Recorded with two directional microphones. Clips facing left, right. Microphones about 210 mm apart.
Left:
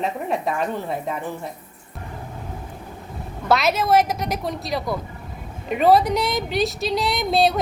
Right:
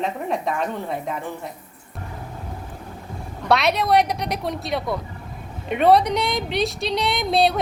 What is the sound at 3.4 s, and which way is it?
Speech, centre (ahead or behind).